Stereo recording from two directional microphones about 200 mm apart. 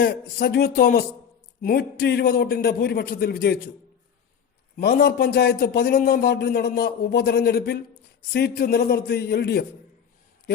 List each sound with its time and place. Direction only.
0.0 s a man's voice: 50° left (ahead or behind)
4.8 s a man's voice: 55° left (ahead or behind)